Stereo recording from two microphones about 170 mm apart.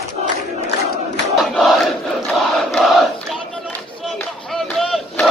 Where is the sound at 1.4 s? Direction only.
Centre (ahead or behind).